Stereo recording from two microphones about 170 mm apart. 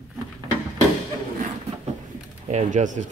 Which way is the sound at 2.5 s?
45° right (ahead or behind).